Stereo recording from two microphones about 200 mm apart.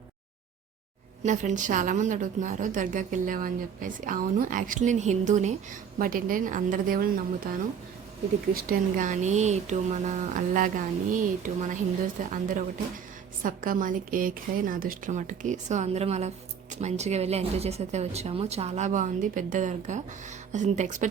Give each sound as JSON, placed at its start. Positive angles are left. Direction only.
{"t": 1.2, "sound": "a woman's voice", "side_deg": -40}
{"t": 8.5, "sound": "a woman's voice", "side_deg": -45}